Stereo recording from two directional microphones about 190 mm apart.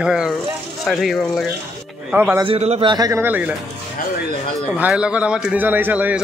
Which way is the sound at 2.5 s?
30° right (ahead or behind).